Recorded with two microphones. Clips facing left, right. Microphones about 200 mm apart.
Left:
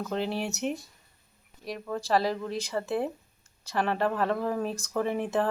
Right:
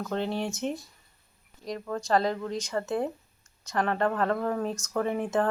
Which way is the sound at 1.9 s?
5° left (ahead or behind).